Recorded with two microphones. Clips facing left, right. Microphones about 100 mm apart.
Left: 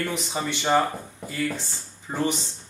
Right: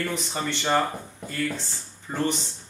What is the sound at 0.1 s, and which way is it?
Speech, 10° left (ahead or behind).